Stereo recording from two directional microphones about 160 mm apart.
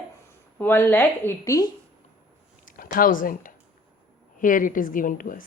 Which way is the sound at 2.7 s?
60° left (ahead or behind).